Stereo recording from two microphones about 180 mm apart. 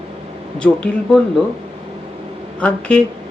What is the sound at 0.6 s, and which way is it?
Speech, 5° left (ahead or behind).